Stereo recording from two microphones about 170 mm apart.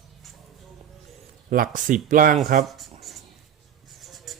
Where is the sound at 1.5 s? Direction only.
55° right (ahead or behind).